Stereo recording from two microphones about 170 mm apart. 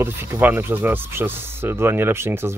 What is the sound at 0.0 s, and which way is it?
Speech, 15° right (ahead or behind).